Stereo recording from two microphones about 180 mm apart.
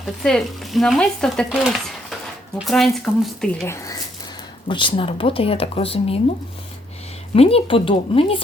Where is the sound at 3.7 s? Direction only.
20° left (ahead or behind).